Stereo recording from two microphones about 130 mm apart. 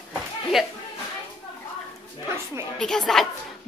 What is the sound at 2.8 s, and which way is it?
Speech, 5° left (ahead or behind).